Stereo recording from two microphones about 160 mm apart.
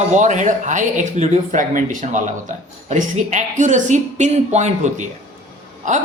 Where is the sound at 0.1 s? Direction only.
50° right (ahead or behind).